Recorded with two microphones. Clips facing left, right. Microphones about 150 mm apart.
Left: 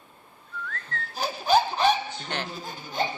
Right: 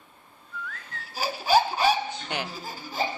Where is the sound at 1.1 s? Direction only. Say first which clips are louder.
Even; 5° right (ahead or behind).